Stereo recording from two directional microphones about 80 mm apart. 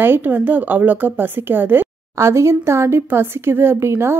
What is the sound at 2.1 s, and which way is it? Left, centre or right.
Speech, right.